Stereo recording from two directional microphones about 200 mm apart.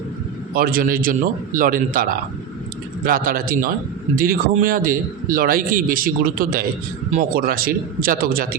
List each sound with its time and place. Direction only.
0.5 s a man's voice: 45° right (ahead or behind)
3.1 s a man's voice: 45° right (ahead or behind)